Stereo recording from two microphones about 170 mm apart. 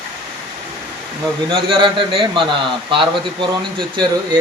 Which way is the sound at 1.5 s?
30° right (ahead or behind).